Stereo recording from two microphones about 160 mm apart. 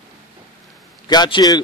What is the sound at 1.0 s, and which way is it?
Speech, 25° left (ahead or behind).